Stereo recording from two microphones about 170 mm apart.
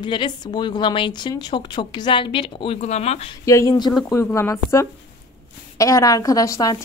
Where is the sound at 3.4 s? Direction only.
20° left (ahead or behind).